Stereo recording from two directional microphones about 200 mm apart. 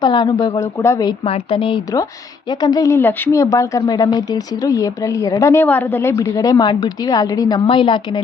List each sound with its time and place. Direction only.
0.0 s a woman's voice: 20° left (ahead or behind)
1.2 s a woman's voice: 30° left (ahead or behind)